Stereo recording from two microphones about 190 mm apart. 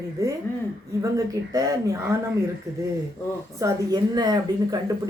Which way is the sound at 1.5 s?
20° right (ahead or behind).